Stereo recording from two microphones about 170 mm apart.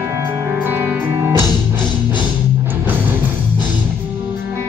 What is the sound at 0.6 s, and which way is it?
Music, 10° right (ahead or behind).